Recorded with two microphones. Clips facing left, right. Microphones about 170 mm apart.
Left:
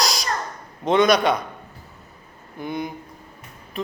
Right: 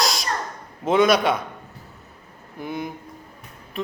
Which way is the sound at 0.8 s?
5° right (ahead or behind).